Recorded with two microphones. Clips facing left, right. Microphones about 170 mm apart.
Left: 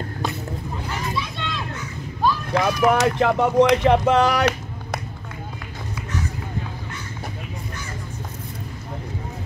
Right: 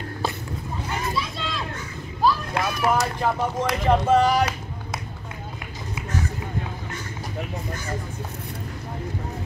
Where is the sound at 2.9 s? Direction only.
70° left (ahead or behind).